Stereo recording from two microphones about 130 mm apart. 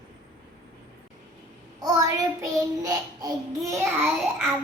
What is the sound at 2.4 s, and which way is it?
Child singing, 30° right (ahead or behind).